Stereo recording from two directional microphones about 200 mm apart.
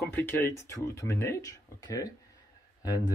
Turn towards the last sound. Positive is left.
turn(degrees=20)  # may be behind; listen again after turning